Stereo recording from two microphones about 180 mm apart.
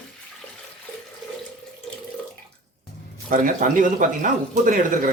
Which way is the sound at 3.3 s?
45° right (ahead or behind).